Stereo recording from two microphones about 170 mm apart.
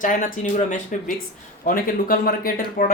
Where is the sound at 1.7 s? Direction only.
60° left (ahead or behind).